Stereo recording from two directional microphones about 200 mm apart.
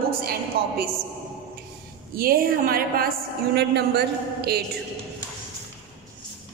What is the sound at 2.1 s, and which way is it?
A woman's voice, 45° right (ahead or behind).